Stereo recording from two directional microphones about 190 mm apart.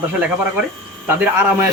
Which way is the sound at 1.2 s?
10° right (ahead or behind).